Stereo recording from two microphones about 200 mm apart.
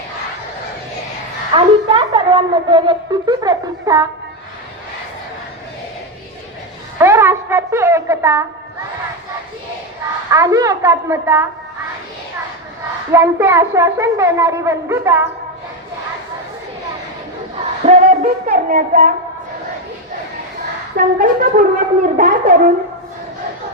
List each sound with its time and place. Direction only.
1.5 s speech: 30° right (ahead or behind)
7.0 s music: 10° right (ahead or behind)
10.3 s speech: 15° right (ahead or behind)
13.1 s speech: 10° right (ahead or behind)
17.8 s music: 40° right (ahead or behind)
20.9 s wind instrument: 45° right (ahead or behind)